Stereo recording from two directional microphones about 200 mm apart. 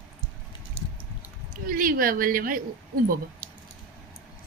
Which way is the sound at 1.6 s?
45° right (ahead or behind).